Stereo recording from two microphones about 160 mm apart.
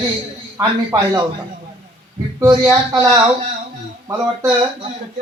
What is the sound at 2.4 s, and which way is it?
Speech, 25° right (ahead or behind).